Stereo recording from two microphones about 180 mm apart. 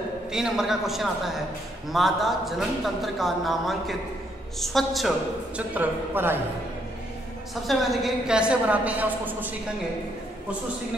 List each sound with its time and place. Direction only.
0.3 s a man's voice: 5° right (ahead or behind)
5.6 s a woman's voice: 10° right (ahead or behind)
7.6 s a woman's voice: centre (ahead or behind)